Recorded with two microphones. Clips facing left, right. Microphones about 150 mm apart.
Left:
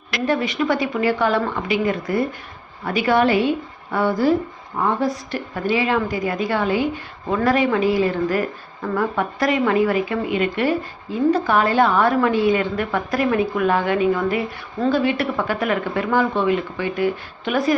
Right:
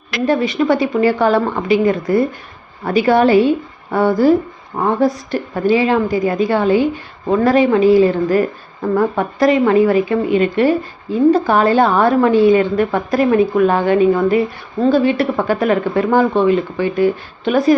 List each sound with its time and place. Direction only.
0.3 s speech: 30° right (ahead or behind)